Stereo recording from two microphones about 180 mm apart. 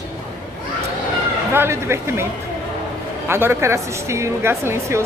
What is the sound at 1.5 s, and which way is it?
Speech, 15° right (ahead or behind).